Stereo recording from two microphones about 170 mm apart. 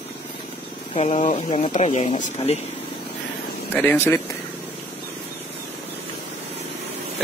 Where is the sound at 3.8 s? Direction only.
10° left (ahead or behind).